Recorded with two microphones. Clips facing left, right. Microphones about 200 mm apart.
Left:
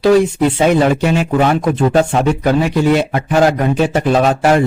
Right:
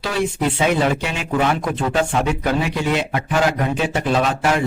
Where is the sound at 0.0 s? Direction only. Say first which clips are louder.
Left 10 dB; 40° left (ahead or behind).